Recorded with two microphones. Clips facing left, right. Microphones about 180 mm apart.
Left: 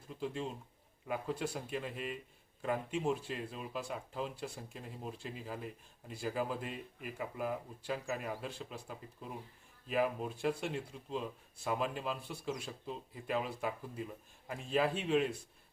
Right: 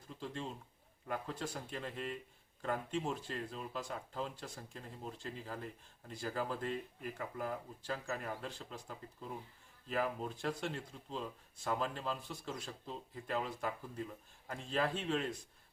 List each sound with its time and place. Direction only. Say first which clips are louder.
0.1 s speech: left 4 dB; 5° left (ahead or behind)